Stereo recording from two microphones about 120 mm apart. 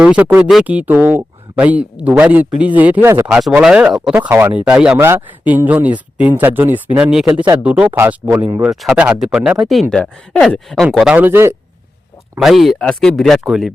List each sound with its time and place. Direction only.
0.0 s speech: 10° right (ahead or behind)
3.6 s speech: 10° right (ahead or behind)
4.1 s speech: 15° right (ahead or behind)
4.9 s speech: 20° right (ahead or behind)
8.7 s speech: centre (ahead or behind)
11.0 s speech: 15° right (ahead or behind)
12.4 s speech: centre (ahead or behind)